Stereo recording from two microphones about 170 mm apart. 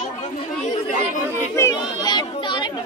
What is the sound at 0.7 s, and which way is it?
Chatter, 45° left (ahead or behind).